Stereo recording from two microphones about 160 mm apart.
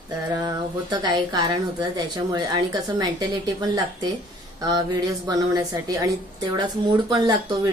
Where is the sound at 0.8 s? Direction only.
25° right (ahead or behind).